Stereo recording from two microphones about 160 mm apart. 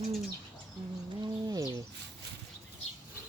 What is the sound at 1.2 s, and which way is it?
Bird, 25° right (ahead or behind).